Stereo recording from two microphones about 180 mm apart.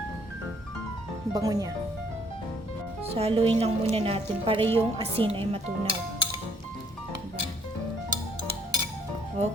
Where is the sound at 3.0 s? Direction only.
35° right (ahead or behind).